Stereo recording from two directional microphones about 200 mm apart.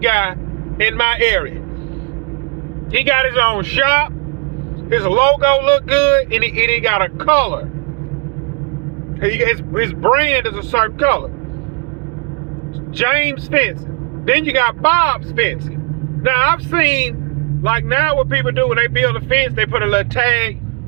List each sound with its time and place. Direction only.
0.0 s speech: 15° left (ahead or behind)
2.9 s speech: 15° left (ahead or behind)
9.2 s speech: 15° left (ahead or behind)
13.0 s speech: 15° left (ahead or behind)
16.2 s speech: 15° left (ahead or behind)